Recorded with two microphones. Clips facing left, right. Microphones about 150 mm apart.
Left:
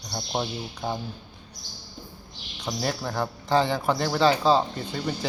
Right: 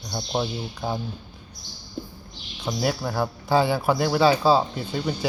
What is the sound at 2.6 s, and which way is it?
Speech, 5° right (ahead or behind).